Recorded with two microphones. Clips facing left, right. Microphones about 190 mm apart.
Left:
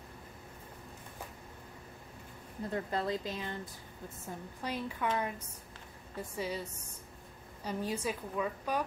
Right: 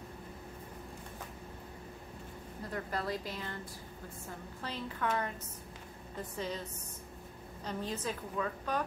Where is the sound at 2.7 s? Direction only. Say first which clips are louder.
Left 3 dB; 25° left (ahead or behind).